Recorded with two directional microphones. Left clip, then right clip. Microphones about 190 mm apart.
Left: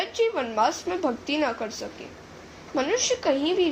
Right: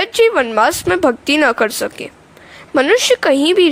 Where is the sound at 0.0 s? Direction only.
55° right (ahead or behind).